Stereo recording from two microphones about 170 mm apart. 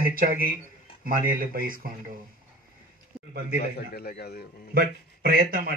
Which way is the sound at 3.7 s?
70° left (ahead or behind).